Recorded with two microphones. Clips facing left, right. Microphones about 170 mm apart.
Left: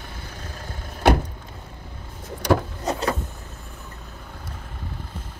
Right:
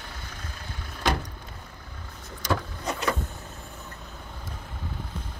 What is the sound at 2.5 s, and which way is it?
Vehicle, 40° left (ahead or behind).